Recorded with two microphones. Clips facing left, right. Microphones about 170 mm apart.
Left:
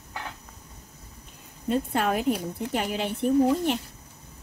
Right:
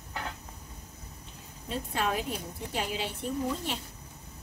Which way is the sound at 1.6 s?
55° left (ahead or behind).